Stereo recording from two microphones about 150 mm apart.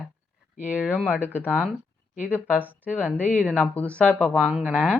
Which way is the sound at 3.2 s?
10° left (ahead or behind).